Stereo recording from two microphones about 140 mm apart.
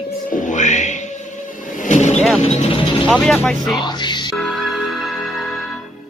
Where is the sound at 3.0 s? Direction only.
5° left (ahead or behind).